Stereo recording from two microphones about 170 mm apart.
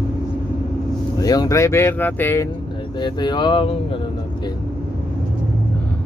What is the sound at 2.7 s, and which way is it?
Speech, 25° left (ahead or behind).